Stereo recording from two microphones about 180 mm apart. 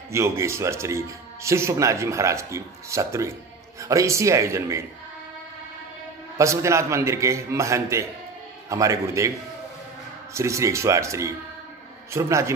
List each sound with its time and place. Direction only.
0.1 s a man's voice: 15° right (ahead or behind)
6.3 s a man's voice: 15° right (ahead or behind)
10.3 s a man's voice: 15° right (ahead or behind)